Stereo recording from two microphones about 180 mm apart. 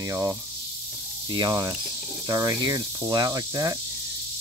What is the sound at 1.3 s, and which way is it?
Cricket, 25° right (ahead or behind).